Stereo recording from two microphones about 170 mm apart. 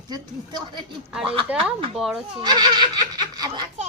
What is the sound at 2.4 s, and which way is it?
Speech, 25° right (ahead or behind).